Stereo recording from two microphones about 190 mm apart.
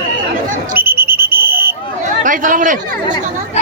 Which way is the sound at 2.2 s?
45° right (ahead or behind).